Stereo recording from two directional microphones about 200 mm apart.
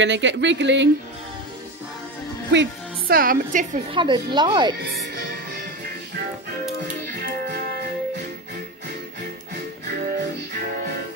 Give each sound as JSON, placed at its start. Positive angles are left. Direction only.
{"t": 0.0, "sound": "speech", "side_deg": -65}
{"t": 2.5, "sound": "a woman's voice", "side_deg": -55}
{"t": 3.9, "sound": "speech", "side_deg": -25}
{"t": 5.1, "sound": "music", "side_deg": -45}